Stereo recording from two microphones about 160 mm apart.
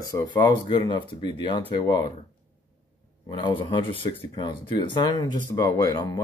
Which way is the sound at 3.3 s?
30° left (ahead or behind).